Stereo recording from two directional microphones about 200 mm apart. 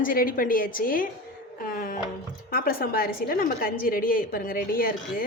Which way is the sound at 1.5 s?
45° left (ahead or behind).